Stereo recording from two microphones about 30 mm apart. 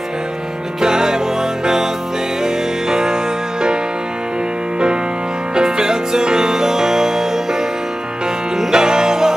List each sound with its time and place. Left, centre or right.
0.7 s music: right
2.4 s music: right
5.5 s music: right
8.5 s music: right